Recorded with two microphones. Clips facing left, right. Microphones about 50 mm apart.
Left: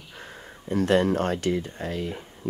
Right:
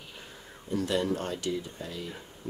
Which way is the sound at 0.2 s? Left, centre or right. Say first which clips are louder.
Left 5 dB; left.